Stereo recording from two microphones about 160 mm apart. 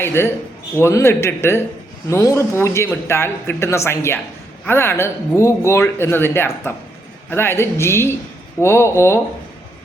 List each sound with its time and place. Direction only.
0.0 s speech: 15° left (ahead or behind)